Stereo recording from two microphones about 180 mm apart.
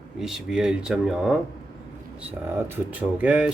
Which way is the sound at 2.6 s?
10° right (ahead or behind).